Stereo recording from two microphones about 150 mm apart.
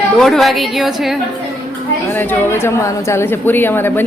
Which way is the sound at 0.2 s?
Centre (ahead or behind).